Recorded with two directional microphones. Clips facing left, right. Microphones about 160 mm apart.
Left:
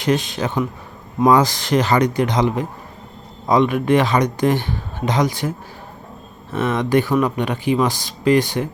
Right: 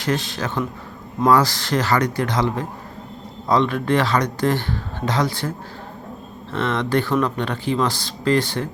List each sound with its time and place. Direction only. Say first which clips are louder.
0.0 s speech: left 4 dB; 15° left (ahead or behind)